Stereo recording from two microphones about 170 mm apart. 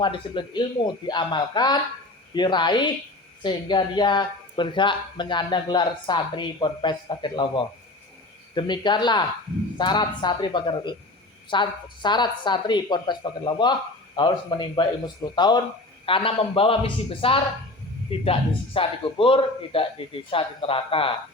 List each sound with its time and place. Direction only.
0.0 s a man's voice: 30° left (ahead or behind)